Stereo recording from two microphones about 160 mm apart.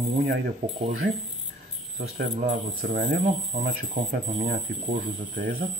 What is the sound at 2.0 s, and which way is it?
Speech, 50° right (ahead or behind).